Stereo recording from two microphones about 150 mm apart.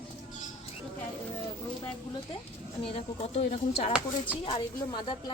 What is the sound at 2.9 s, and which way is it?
Speech, 45° left (ahead or behind).